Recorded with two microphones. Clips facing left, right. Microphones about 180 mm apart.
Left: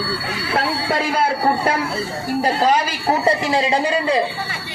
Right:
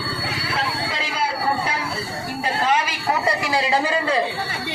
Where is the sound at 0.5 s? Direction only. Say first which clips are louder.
Left 8 dB; 55° left (ahead or behind).